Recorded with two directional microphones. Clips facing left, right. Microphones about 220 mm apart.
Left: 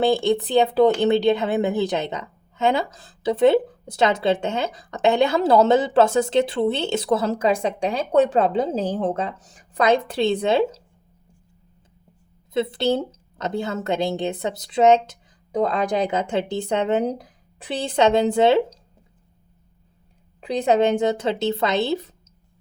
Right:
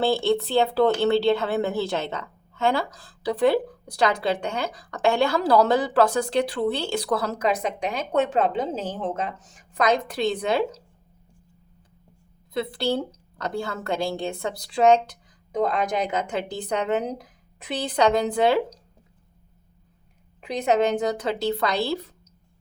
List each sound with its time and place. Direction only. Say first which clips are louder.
0.0 s speech: left 3 dB; 15° left (ahead or behind)
12.5 s speech: left 4 dB; 20° left (ahead or behind)
20.4 s speech: left 3 dB; 30° left (ahead or behind)